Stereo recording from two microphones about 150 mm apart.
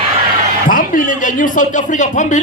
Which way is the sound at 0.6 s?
65° left (ahead or behind).